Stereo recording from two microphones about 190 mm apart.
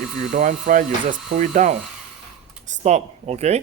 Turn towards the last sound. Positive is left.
turn(degrees=-35)  # may be behind; listen again after turning